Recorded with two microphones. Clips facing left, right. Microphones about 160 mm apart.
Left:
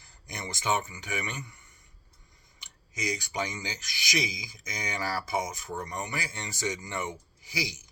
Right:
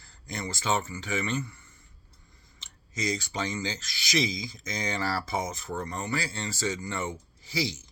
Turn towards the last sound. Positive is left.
turn(degrees=10)  # may be behind; listen again after turning